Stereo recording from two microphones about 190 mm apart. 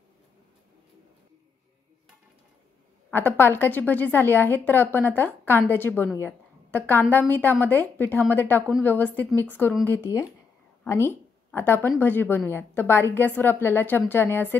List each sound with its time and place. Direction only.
3.1 s a woman's voice: 10° left (ahead or behind)